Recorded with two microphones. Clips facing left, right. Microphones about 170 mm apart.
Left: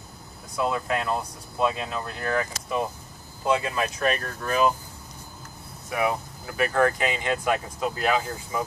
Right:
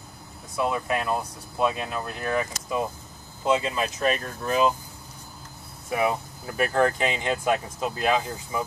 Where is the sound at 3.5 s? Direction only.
20° right (ahead or behind).